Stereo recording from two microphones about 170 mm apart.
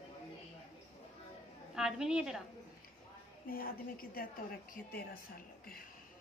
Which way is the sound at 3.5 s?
60° left (ahead or behind).